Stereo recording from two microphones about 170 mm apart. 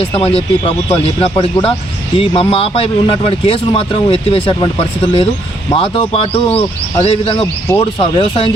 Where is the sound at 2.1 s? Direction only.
35° left (ahead or behind).